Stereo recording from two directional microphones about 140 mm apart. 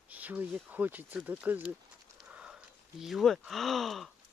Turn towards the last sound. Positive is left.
turn(degrees=0)  # may be behind; listen again after turning